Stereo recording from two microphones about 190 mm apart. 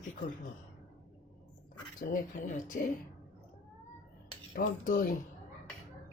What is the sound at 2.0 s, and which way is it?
Speech, 45° left (ahead or behind).